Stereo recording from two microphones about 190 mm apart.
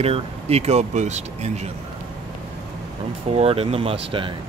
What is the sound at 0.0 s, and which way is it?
Speech, 30° right (ahead or behind).